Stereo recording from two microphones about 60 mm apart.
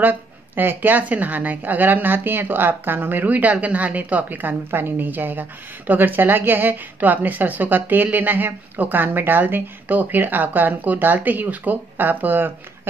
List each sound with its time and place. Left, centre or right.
0.0 s a woman's voice: right